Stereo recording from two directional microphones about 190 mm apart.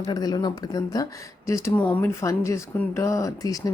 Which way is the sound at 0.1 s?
20° left (ahead or behind).